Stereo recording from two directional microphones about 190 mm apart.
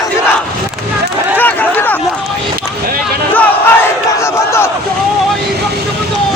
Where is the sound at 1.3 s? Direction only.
10° left (ahead or behind).